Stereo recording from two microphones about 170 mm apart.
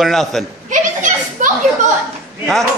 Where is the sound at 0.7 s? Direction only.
45° right (ahead or behind).